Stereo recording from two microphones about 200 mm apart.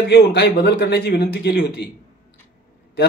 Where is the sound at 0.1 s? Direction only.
55° left (ahead or behind).